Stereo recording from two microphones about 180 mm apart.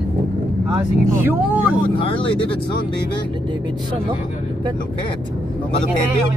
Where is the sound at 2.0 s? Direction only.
30° left (ahead or behind).